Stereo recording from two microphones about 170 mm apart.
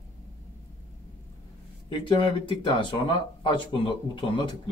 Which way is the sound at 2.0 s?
30° left (ahead or behind).